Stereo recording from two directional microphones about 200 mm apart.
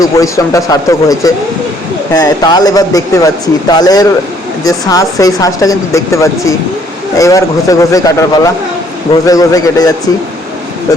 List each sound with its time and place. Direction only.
0.0 s speech: 15° left (ahead or behind)